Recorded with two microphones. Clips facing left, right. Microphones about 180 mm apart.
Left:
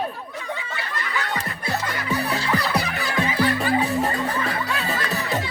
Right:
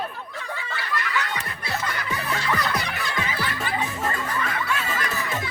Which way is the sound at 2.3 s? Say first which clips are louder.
Right 2 dB; 35° left (ahead or behind).